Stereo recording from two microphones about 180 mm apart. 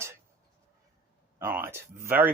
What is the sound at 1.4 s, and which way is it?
Speech, 15° right (ahead or behind).